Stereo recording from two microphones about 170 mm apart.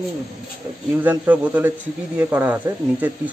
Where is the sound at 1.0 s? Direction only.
10° right (ahead or behind).